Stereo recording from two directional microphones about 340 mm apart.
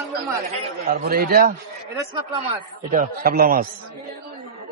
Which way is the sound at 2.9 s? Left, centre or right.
Right.